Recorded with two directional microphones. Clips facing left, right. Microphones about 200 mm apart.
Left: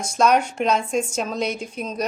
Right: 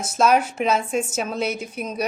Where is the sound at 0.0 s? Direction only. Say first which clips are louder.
Even; 5° right (ahead or behind).